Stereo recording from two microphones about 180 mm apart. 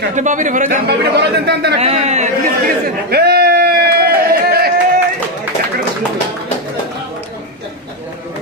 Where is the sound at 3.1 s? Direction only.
60° right (ahead or behind).